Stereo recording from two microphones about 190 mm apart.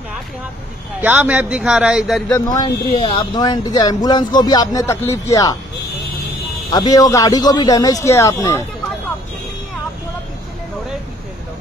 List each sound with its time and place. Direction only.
1.0 s speech: 10° right (ahead or behind)
2.3 s speech: 20° left (ahead or behind)
6.7 s speech: 20° left (ahead or behind)